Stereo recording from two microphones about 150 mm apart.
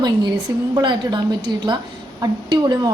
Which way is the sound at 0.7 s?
30° right (ahead or behind).